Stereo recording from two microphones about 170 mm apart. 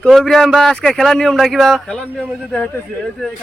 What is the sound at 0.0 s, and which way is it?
Speech, centre (ahead or behind).